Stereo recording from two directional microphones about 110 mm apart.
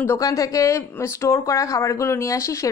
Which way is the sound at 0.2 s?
30° left (ahead or behind).